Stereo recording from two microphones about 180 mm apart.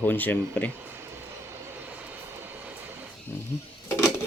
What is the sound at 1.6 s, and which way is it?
Vehicle, 10° right (ahead or behind).